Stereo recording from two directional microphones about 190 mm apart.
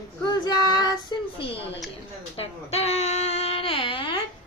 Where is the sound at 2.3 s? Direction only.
35° left (ahead or behind).